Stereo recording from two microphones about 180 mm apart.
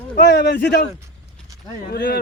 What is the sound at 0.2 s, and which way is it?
Speech, 65° left (ahead or behind).